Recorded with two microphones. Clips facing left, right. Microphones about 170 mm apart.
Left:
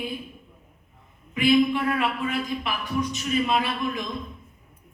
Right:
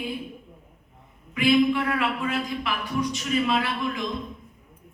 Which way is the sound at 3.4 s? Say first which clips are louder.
Even; 20° left (ahead or behind).